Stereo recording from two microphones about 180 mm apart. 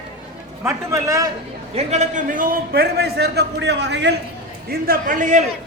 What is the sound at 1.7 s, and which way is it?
A man's voice, 40° right (ahead or behind).